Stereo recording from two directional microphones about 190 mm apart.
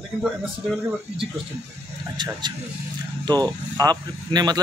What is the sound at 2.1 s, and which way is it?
Speech, 25° right (ahead or behind).